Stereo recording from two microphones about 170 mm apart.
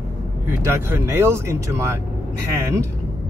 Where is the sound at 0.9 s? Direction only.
15° right (ahead or behind).